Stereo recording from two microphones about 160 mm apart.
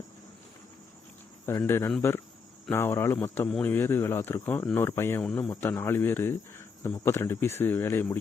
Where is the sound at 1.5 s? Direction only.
15° left (ahead or behind).